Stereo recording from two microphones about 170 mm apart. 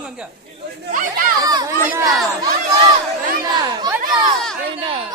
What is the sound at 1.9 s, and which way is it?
Speech, 15° right (ahead or behind).